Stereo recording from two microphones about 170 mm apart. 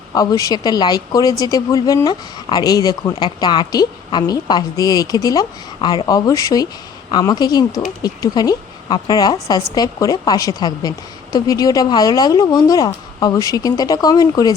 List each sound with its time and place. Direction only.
0.1 s speech: 20° left (ahead or behind)